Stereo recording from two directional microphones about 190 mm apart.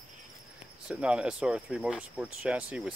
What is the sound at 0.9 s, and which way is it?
Speech, 5° right (ahead or behind).